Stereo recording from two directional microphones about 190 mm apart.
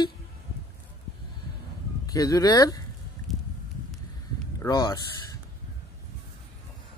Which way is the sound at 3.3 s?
Centre (ahead or behind).